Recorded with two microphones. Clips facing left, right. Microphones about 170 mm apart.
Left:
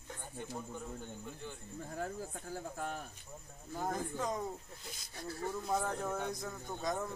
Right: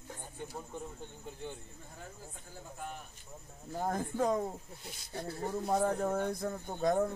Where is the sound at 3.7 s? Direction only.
50° right (ahead or behind).